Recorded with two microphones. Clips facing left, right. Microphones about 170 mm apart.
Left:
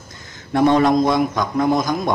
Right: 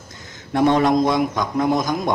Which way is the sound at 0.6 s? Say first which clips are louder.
Left 2 dB; 15° right (ahead or behind).